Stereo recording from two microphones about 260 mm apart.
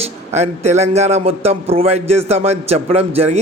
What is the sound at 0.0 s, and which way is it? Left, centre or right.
A man's voice, right.